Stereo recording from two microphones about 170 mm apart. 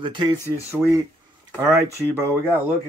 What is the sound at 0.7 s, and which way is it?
Speech, 15° right (ahead or behind).